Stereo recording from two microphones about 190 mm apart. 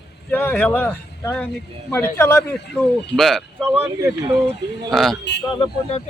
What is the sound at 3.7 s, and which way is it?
Speech, 10° right (ahead or behind).